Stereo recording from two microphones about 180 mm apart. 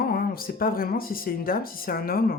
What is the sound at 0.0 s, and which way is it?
Speech, 55° left (ahead or behind).